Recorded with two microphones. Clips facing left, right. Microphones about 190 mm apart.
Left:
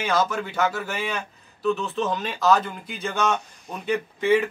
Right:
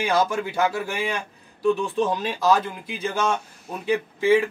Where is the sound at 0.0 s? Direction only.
15° right (ahead or behind).